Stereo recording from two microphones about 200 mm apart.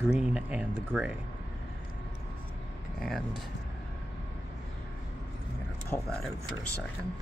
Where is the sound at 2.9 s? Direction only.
Centre (ahead or behind).